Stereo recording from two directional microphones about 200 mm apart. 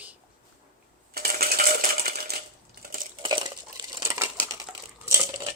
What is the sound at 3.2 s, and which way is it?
Dishes, 20° right (ahead or behind).